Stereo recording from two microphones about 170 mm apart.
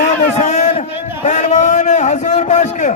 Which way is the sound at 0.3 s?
45° left (ahead or behind).